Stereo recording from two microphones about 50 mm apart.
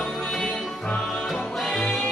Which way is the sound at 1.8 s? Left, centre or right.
Centre.